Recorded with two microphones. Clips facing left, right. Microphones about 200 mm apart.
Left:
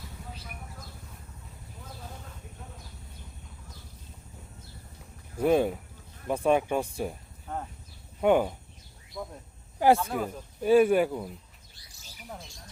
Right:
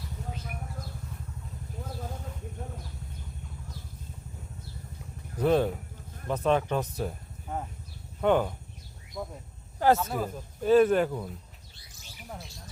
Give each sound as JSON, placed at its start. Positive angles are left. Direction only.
{"t": 2.6, "sound": "a sound", "side_deg": -45}
{"t": 5.4, "sound": "speech", "side_deg": 10}
{"t": 7.4, "sound": "a sound", "side_deg": -5}
{"t": 8.2, "sound": "speech", "side_deg": 10}
{"t": 9.2, "sound": "speech", "side_deg": 0}
{"t": 10.6, "sound": "speech", "side_deg": 10}